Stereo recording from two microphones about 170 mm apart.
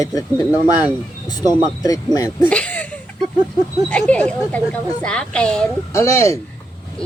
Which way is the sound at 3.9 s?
5° left (ahead or behind).